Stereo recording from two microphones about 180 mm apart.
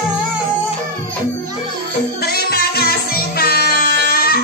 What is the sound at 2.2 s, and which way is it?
Music, 60° left (ahead or behind).